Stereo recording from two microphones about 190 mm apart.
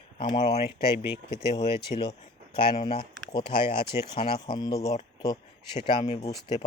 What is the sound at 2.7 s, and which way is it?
Speech, 25° left (ahead or behind).